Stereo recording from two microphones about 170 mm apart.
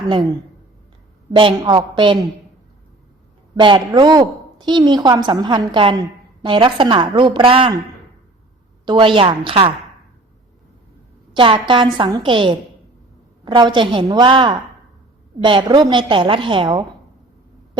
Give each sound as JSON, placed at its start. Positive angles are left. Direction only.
{"t": 1.3, "sound": "a woman's voice", "side_deg": -30}
{"t": 3.6, "sound": "a woman's voice", "side_deg": -30}
{"t": 8.9, "sound": "a woman's voice", "side_deg": -30}
{"t": 11.3, "sound": "a woman's voice", "side_deg": -30}